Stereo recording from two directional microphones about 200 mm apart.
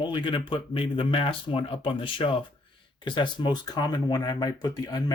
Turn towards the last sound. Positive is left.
turn(degrees=20)  # may be behind; listen again after turning